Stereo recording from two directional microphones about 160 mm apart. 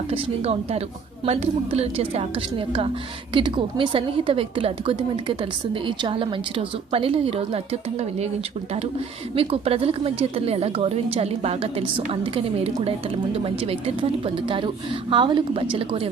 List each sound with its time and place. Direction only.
0.1 s a woman's voice: 40° right (ahead or behind)
9.3 s a woman's voice: 35° right (ahead or behind)